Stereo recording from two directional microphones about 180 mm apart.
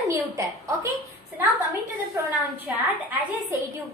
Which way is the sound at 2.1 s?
10° right (ahead or behind).